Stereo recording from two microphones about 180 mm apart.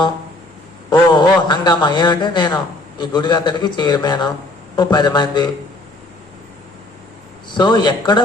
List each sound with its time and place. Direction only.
0.9 s a man's voice: 25° left (ahead or behind)
7.5 s speech: 25° left (ahead or behind)